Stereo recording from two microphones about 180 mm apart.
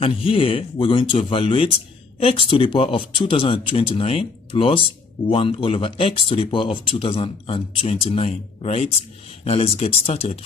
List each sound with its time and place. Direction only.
0.0 s speech: 30° left (ahead or behind)